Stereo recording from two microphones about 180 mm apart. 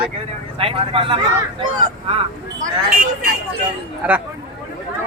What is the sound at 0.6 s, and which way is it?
Speech, 30° right (ahead or behind).